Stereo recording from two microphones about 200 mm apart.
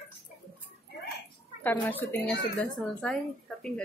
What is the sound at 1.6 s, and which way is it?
A woman's voice, 10° left (ahead or behind).